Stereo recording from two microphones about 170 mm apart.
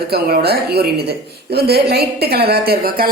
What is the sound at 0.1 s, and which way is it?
A woman's voice, 70° right (ahead or behind).